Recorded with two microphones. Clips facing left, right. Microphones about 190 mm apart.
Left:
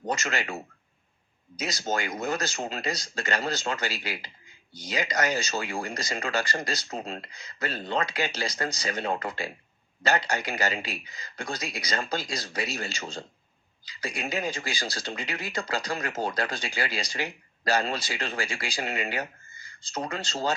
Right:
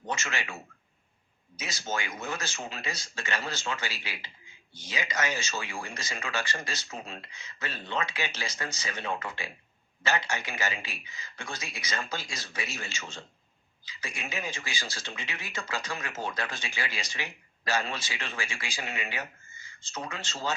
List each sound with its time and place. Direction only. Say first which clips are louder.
0.0 s a man's voice: left 5 dB; 40° left (ahead or behind)